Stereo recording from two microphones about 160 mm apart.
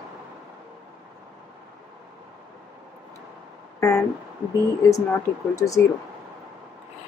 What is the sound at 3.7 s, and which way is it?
Speech, 20° left (ahead or behind).